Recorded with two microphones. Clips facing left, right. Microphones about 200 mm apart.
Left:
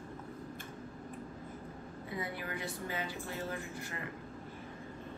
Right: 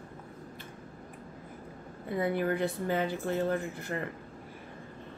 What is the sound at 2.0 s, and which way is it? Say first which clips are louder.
Speech: right 12 dB; 55° right (ahead or behind).